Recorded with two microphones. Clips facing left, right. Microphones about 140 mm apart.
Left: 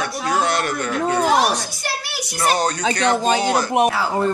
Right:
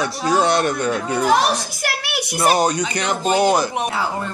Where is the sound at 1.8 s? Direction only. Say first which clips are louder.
Right 3 dB; 65° right (ahead or behind).